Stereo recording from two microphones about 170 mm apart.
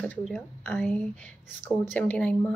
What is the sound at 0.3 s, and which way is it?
Speech, 10° left (ahead or behind).